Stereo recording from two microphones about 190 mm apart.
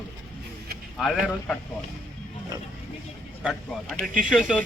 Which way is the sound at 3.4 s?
Centre (ahead or behind).